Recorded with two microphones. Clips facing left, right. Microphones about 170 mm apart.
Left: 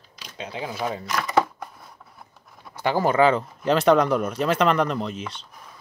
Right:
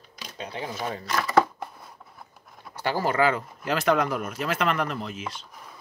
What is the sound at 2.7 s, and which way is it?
Speech, 15° left (ahead or behind).